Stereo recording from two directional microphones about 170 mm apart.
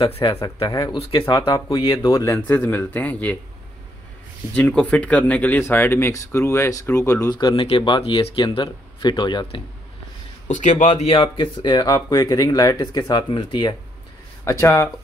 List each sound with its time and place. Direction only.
0.1 s speech: 35° left (ahead or behind)
0.6 s speech: 25° left (ahead or behind)
4.6 s speech: 5° left (ahead or behind); by 9.6 s 25° left (ahead or behind)
10.5 s a man's voice: 45° left (ahead or behind)
10.9 s speech: 35° left (ahead or behind); by 14.9 s 15° left (ahead or behind)